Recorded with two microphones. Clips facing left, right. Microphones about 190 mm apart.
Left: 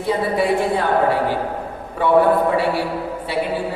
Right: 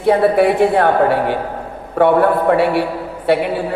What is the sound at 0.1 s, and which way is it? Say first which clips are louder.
A man's voice: right 7 dB; 65° right (ahead or behind).